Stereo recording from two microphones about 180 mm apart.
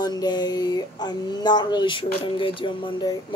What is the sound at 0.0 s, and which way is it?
Speech, 25° left (ahead or behind).